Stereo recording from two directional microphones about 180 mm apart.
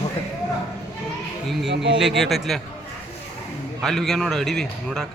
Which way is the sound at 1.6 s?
75° right (ahead or behind).